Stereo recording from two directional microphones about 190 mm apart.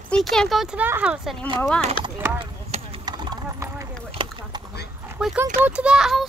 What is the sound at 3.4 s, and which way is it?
Clip-clop, 15° right (ahead or behind).